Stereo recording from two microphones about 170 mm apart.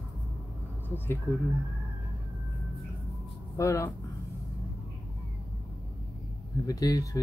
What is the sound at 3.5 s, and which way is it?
Speech, 15° left (ahead or behind).